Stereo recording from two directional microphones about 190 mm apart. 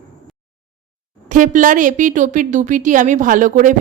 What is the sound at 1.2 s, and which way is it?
Speech, 45° right (ahead or behind).